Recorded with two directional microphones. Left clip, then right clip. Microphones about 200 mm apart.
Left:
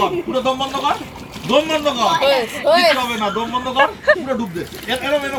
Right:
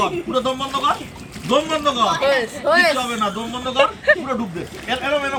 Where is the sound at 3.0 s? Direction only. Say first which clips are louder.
Left 3 dB; 20° right (ahead or behind).